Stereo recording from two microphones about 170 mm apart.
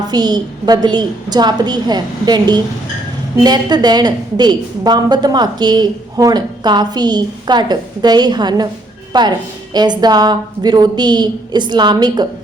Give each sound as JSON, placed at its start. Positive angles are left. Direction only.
{"t": 0.1, "sound": "a woman's voice", "side_deg": -25}